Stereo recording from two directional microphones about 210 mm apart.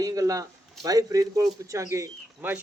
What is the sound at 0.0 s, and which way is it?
A man's voice, 15° right (ahead or behind).